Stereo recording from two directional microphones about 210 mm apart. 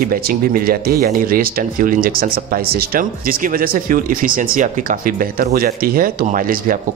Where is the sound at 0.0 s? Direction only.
40° right (ahead or behind).